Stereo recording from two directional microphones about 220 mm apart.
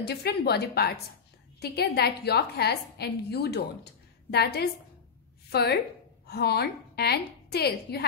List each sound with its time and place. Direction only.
0.0 s a woman's voice: 45° left (ahead or behind)